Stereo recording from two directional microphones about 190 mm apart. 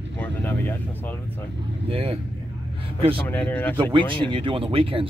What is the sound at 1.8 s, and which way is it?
Speech, 30° right (ahead or behind).